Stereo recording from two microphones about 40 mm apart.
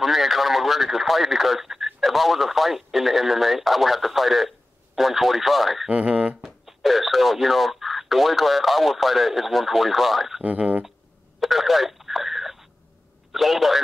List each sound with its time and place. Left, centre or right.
0.0 s speech: centre
6.0 s speech: right
6.4 s speech: centre
10.4 s speech: right
11.3 s a sound: centre
13.3 s a man's voice: centre